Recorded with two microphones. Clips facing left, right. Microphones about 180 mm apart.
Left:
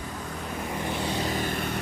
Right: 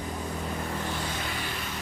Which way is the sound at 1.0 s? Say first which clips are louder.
Left 6 dB; 35° left (ahead or behind).